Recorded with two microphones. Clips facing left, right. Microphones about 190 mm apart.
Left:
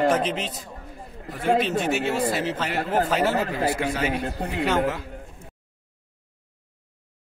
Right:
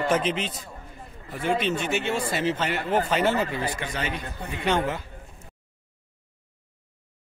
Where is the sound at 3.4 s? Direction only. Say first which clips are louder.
Left 5 dB; 45° left (ahead or behind).